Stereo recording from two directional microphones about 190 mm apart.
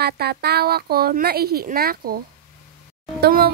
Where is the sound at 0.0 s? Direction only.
55° right (ahead or behind).